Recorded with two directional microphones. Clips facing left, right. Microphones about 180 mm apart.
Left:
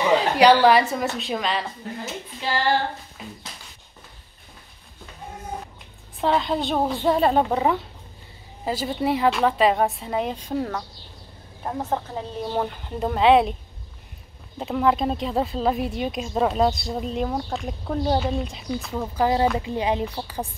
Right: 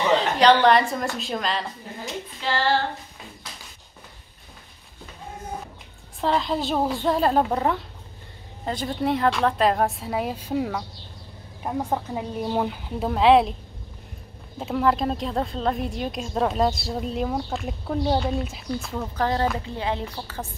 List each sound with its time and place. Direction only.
0.0 s a woman's voice: 10° left (ahead or behind)
2.5 s a woman's voice: 15° left (ahead or behind)
6.2 s a woman's voice: centre (ahead or behind)
14.6 s a woman's voice: centre (ahead or behind)